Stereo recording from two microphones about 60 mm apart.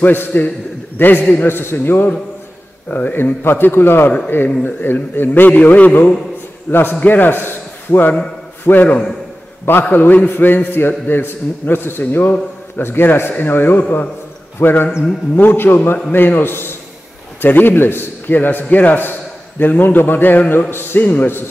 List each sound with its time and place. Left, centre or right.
0.0 s a man's voice: left
3.4 s a man's voice: left
6.7 s a man's voice: left